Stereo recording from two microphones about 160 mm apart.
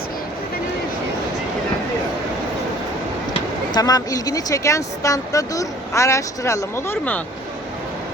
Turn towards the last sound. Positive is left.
turn(degrees=10)  # may be behind; listen again after turning